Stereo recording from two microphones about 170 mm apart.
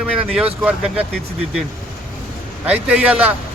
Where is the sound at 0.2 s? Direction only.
5° right (ahead or behind).